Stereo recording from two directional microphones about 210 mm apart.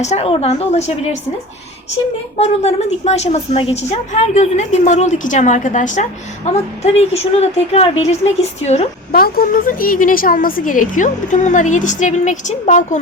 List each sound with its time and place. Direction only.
0.0 s a woman's voice: 30° left (ahead or behind)
2.4 s a woman's voice: 30° left (ahead or behind)
9.2 s a woman's voice: 45° left (ahead or behind)